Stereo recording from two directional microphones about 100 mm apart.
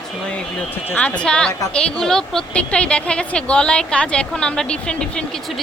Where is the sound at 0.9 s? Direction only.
15° left (ahead or behind).